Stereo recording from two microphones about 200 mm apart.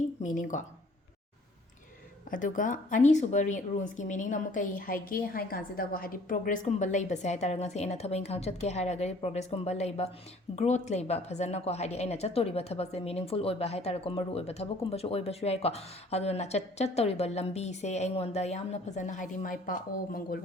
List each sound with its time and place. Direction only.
0.2 s speech: 40° left (ahead or behind)
2.3 s a woman's voice: 40° left (ahead or behind)